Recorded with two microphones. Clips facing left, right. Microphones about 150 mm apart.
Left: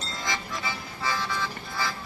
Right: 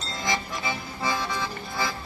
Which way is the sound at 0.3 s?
20° right (ahead or behind).